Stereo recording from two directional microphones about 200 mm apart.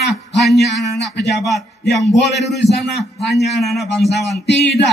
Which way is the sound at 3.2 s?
60° left (ahead or behind).